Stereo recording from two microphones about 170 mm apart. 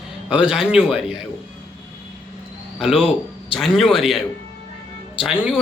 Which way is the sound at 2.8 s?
5° right (ahead or behind).